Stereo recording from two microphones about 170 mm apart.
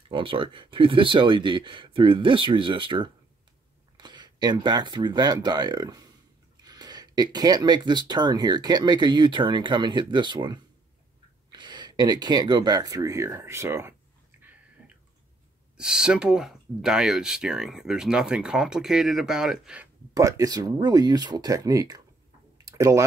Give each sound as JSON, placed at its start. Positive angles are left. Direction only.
{"t": 0.1, "sound": "speech", "side_deg": -30}
{"t": 14.4, "sound": "biting", "side_deg": -10}
{"t": 15.8, "sound": "speech", "side_deg": -5}
{"t": 20.2, "sound": "speech", "side_deg": -20}
{"t": 22.7, "sound": "a sound", "side_deg": -20}